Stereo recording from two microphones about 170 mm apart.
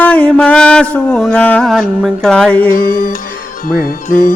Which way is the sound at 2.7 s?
55° left (ahead or behind).